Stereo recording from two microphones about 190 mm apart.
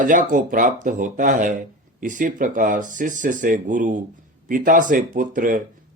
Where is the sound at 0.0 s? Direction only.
45° right (ahead or behind).